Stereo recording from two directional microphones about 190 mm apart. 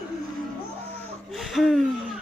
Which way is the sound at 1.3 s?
Centre (ahead or behind).